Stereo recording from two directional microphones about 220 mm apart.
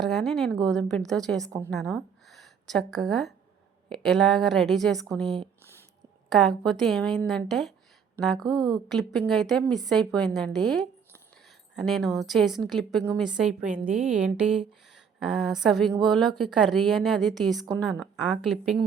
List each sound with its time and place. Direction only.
0.0 s a woman's voice: centre (ahead or behind)
8.4 s speech: 15° right (ahead or behind)
8.9 s a woman's voice: centre (ahead or behind)